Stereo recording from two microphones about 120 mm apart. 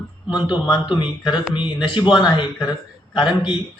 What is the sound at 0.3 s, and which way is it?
A man's voice, 40° left (ahead or behind).